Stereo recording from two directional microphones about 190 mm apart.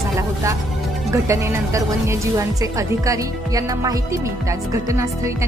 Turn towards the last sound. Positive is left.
turn(degrees=-15)  # may be behind; listen again after turning